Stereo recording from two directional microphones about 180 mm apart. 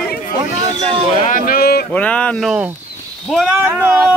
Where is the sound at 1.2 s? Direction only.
50° left (ahead or behind).